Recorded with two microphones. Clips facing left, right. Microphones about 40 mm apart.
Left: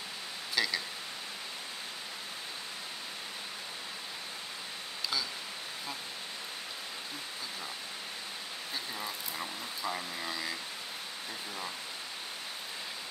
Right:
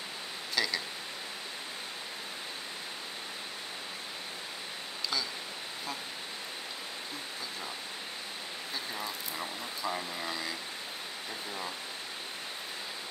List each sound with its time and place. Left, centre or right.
0.6 s clock: centre
8.9 s speech: centre